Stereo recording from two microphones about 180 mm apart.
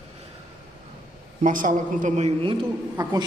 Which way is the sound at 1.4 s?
45° right (ahead or behind).